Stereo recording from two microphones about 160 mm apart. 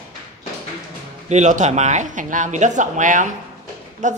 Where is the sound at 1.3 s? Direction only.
50° right (ahead or behind).